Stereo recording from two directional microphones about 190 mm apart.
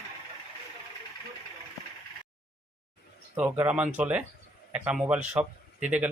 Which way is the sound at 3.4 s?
10° right (ahead or behind).